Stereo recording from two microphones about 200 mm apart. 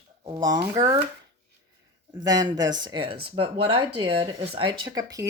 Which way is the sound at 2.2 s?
20° right (ahead or behind).